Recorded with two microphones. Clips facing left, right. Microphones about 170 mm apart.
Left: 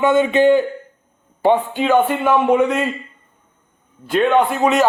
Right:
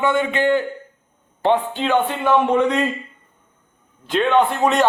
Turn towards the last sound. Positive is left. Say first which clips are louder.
# left 1 dB
turn(degrees=0)  # may be behind; listen again after turning